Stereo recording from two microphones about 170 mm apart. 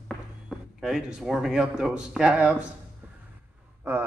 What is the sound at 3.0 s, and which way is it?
Music, 5° right (ahead or behind).